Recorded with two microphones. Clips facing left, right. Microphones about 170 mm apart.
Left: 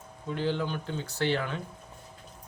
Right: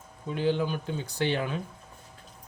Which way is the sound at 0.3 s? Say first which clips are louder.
Right 3 dB; 15° right (ahead or behind).